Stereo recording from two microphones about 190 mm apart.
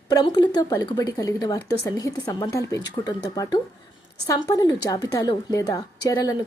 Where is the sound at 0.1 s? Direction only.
20° left (ahead or behind).